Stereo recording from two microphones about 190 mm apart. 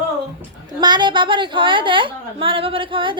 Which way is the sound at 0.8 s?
25° right (ahead or behind).